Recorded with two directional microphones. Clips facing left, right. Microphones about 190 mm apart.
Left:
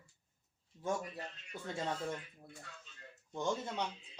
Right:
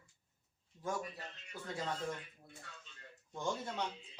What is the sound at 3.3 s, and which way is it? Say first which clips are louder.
Speech: left 2 dB; 20° left (ahead or behind).